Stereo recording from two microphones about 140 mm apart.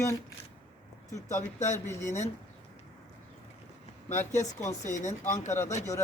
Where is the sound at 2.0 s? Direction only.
60° left (ahead or behind).